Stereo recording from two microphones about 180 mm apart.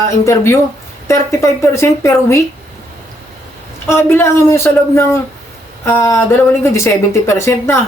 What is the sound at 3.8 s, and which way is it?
Speech, 15° left (ahead or behind).